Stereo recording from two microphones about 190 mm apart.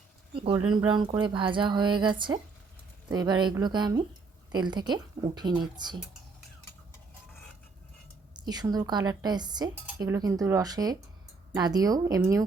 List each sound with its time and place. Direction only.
0.3 s speech: 25° right (ahead or behind)
8.3 s speech: 20° right (ahead or behind)